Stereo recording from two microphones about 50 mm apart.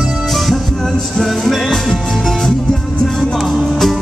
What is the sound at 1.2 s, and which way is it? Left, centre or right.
Music, centre.